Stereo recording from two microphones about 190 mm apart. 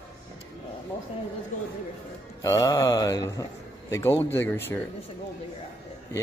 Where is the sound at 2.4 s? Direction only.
15° left (ahead or behind).